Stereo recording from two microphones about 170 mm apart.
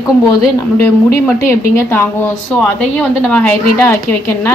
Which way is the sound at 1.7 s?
15° left (ahead or behind).